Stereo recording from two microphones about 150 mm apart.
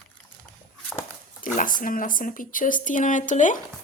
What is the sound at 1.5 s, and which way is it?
Speech, 65° left (ahead or behind).